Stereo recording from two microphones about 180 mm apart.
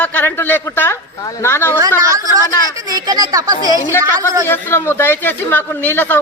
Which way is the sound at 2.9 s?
20° right (ahead or behind).